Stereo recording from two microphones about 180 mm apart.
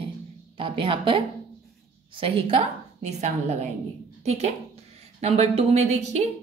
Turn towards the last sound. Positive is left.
turn(degrees=-40)  # may be behind; listen again after turning